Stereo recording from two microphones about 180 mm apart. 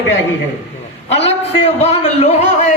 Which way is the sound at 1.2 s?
35° left (ahead or behind).